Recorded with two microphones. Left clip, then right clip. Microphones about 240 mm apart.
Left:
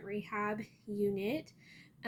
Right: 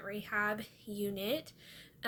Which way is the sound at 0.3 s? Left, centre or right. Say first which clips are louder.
Right 4 dB; centre.